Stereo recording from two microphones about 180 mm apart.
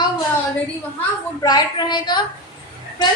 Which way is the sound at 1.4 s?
20° left (ahead or behind).